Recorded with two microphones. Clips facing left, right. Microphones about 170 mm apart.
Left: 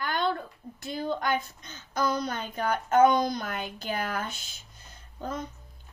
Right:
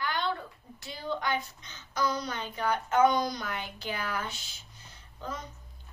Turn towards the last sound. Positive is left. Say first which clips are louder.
# left 4 dB
turn(degrees=50)  # may be behind; listen again after turning